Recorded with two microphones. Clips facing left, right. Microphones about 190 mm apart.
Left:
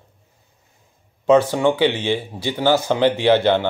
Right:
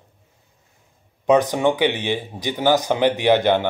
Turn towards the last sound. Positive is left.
turn(degrees=-15)  # may be behind; listen again after turning